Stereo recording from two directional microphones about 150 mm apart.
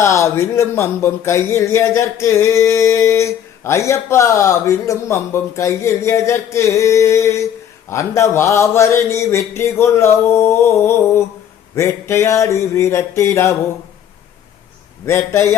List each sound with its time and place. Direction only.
0.0 s speech: 20° left (ahead or behind)
15.0 s speech: 20° left (ahead or behind)